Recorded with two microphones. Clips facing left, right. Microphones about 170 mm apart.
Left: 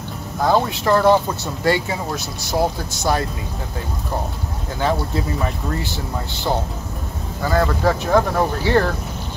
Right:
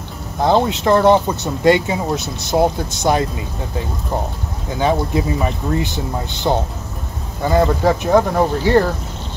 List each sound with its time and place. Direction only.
0.4 s speech: 25° right (ahead or behind)
4.7 s speech: 15° right (ahead or behind)